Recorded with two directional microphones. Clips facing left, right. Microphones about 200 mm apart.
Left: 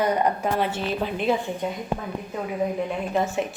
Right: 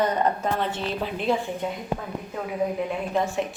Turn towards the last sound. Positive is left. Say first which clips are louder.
# left 1 dB
turn(degrees=0)  # may be behind; listen again after turning